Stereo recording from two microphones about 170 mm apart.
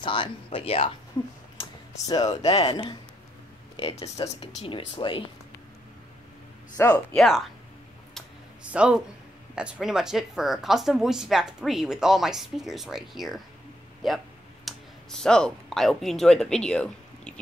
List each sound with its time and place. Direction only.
0.0 s speech: 30° left (ahead or behind)
1.6 s a sound: 25° left (ahead or behind)
2.4 s speech: 30° left (ahead or behind)
6.8 s speech: 15° left (ahead or behind)
7.2 s a woman's voice: centre (ahead or behind)
8.6 s a woman's voice: 5° right (ahead or behind)
14.0 s a sound: centre (ahead or behind)